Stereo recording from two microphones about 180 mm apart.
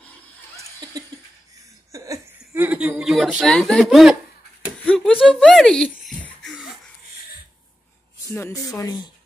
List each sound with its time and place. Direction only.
1.9 s speech: 15° right (ahead or behind); by 4.2 s centre (ahead or behind)
4.8 s a sound: 5° left (ahead or behind)
8.3 s speech: 15° left (ahead or behind)